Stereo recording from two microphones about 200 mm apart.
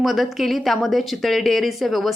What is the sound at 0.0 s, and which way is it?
A woman's voice, centre (ahead or behind).